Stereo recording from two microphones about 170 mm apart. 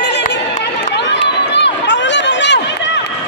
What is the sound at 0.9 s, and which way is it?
Run, 85° left.